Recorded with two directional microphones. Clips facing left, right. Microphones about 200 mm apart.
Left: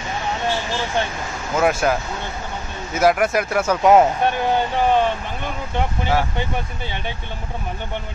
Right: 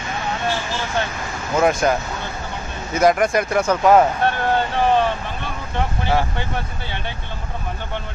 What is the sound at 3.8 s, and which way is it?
Speech, 20° left (ahead or behind).